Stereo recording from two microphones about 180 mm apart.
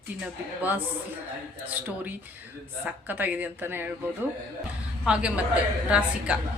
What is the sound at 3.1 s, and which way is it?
Speech, 10° right (ahead or behind).